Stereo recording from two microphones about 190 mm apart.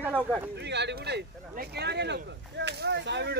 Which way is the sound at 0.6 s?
65° right (ahead or behind).